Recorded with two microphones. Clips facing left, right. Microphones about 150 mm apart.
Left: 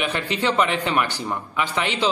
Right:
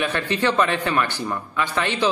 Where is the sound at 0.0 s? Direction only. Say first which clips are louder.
Right 2 dB; 15° left (ahead or behind).